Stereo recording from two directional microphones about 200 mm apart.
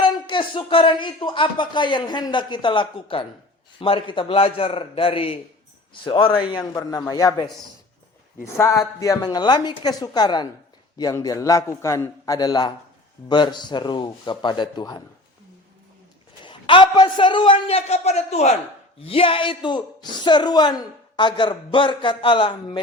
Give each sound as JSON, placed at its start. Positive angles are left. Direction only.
{"t": 0.0, "sound": "a woman's voice", "side_deg": 25}
{"t": 8.5, "sound": "a woman's voice", "side_deg": 15}
{"t": 16.4, "sound": "a woman's voice", "side_deg": 25}